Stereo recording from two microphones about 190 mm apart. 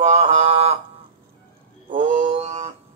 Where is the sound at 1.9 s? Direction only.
35° right (ahead or behind).